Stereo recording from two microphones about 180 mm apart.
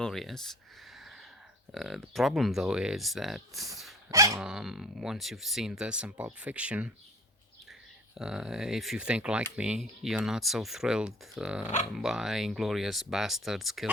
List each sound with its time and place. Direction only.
0.0 s speech: centre (ahead or behind)
0.9 s gasp: centre (ahead or behind)
1.7 s speech: centre (ahead or behind)
4.1 s dog: 15° right (ahead or behind)
4.4 s speech: 5° right (ahead or behind)
8.1 s speech: 5° right (ahead or behind)